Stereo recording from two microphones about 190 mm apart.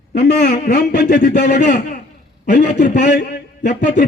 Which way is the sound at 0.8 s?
40° left (ahead or behind).